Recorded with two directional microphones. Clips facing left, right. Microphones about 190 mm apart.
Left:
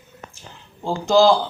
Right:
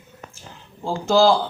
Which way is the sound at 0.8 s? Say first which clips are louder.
Left 1 dB; 5° right (ahead or behind).